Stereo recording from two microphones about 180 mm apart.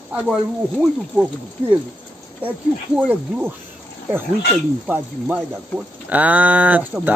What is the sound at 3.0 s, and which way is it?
Speech, 10° right (ahead or behind).